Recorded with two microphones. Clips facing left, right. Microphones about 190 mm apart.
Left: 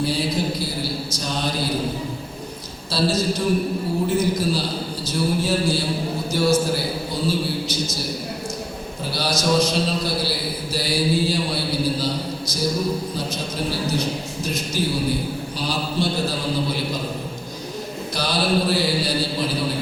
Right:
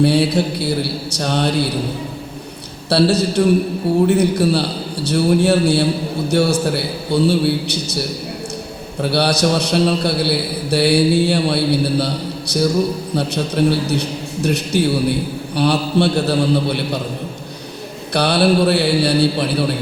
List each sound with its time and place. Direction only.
0.0 s a man's voice: 65° right (ahead or behind)
2.9 s a man's voice: 65° right (ahead or behind)
9.0 s a man's voice: 65° right (ahead or behind)
18.1 s a man's voice: 65° right (ahead or behind)